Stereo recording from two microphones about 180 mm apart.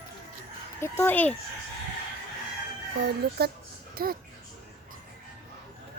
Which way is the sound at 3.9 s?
55° right (ahead or behind).